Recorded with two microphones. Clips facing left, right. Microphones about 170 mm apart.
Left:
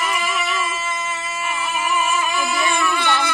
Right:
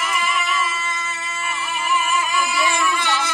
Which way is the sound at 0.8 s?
45° left (ahead or behind).